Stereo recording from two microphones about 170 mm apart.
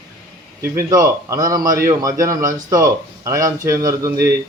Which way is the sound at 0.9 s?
20° right (ahead or behind).